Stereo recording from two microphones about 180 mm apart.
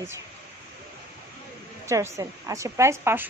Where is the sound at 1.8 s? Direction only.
15° right (ahead or behind).